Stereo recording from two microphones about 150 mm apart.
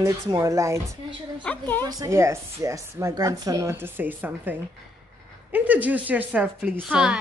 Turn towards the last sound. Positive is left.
turn(degrees=-5)  # may be behind; listen again after turning